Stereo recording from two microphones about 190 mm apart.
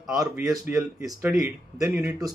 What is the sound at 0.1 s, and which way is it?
Speech, 20° right (ahead or behind).